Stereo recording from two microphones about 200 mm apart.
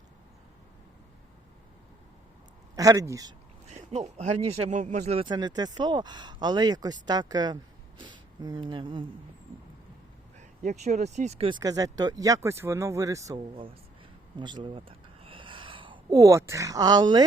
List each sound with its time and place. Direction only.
2.7 s speech: 15° right (ahead or behind)
3.8 s speech: 35° right (ahead or behind)
10.6 s speech: 35° right (ahead or behind); by 17.2 s 20° right (ahead or behind)